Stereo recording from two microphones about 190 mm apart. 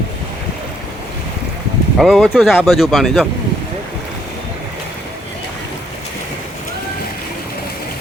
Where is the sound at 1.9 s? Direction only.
Centre (ahead or behind).